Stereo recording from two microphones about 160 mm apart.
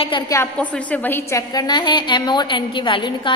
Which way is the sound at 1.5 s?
25° left (ahead or behind).